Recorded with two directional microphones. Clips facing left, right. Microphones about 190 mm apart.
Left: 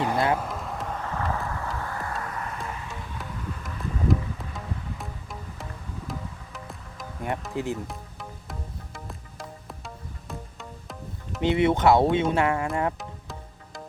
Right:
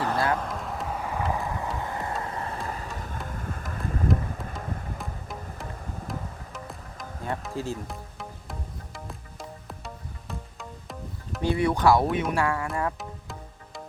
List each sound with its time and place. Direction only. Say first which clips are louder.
0.0 s a sound: left 2 dB; 20° left (ahead or behind)
0.3 s music: even; centre (ahead or behind); by 4.9 s 50° right (ahead or behind)
4.9 s insect: right 1 dB; centre (ahead or behind)
6.1 s music: left 1 dB; centre (ahead or behind)
7.5 s speech: left 3 dB; 20° left (ahead or behind)
7.9 s music: even; centre (ahead or behind)
11.3 s speech: left 3 dB; 20° left (ahead or behind)